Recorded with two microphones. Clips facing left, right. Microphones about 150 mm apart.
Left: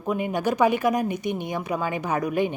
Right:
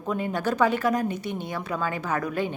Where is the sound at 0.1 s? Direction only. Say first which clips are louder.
Left 2 dB; 15° left (ahead or behind).